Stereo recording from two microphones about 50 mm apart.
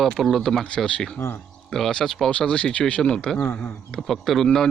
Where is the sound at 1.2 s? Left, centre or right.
Left.